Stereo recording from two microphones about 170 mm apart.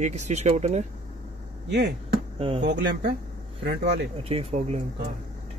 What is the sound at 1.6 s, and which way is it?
Speech, 80° right.